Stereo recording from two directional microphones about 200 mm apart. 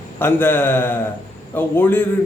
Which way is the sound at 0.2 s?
10° left (ahead or behind).